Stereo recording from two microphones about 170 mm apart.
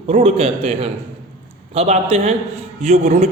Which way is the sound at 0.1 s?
35° right (ahead or behind).